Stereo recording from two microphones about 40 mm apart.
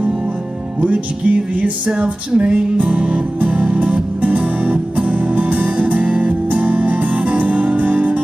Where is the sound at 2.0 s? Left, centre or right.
Right.